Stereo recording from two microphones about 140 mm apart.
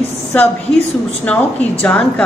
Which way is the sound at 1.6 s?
10° left (ahead or behind).